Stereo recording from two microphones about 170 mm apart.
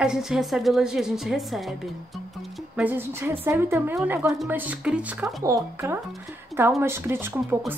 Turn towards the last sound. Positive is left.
turn(degrees=-10)  # may be behind; listen again after turning